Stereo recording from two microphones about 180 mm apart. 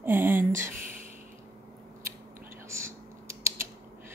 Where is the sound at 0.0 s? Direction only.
10° right (ahead or behind).